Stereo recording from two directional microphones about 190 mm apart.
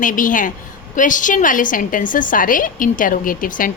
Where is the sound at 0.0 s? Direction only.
45° left (ahead or behind).